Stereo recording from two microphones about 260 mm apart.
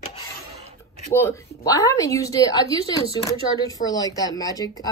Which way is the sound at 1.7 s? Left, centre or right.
Centre.